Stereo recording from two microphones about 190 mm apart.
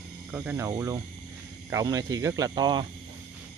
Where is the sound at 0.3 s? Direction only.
5° right (ahead or behind); by 2.9 s 25° right (ahead or behind).